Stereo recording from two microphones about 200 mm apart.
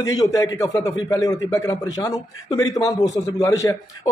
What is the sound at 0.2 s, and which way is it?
A man's voice, 15° left (ahead or behind).